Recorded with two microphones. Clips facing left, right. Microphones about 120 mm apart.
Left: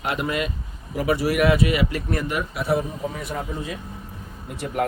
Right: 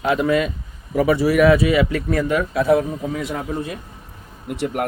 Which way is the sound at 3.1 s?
90° right.